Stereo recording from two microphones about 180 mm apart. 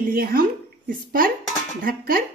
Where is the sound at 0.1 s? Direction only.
55° right (ahead or behind).